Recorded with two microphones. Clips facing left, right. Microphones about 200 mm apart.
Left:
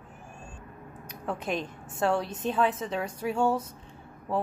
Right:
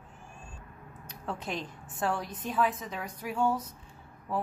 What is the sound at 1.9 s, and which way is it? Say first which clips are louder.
A woman's voice: left 5 dB; 25° left (ahead or behind).